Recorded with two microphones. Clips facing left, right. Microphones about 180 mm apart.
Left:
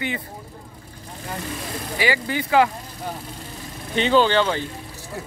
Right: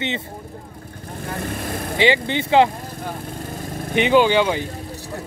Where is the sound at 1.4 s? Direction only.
55° right (ahead or behind).